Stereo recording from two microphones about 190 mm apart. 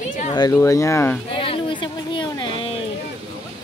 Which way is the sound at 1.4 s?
25° left (ahead or behind).